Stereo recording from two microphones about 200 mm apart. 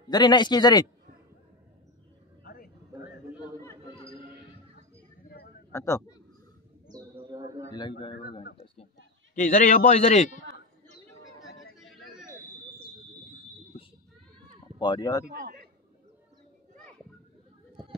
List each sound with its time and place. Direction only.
0.1 s a man's voice: 20° left (ahead or behind)
2.4 s a sound: 50° left (ahead or behind)
5.7 s speech: 15° left (ahead or behind)
6.9 s bird: 20° right (ahead or behind)
9.3 s a man's voice: 40° left (ahead or behind)
11.8 s vehicle: centre (ahead or behind)
14.8 s a man's voice: 20° left (ahead or behind)
15.2 s a man's voice: 45° right (ahead or behind)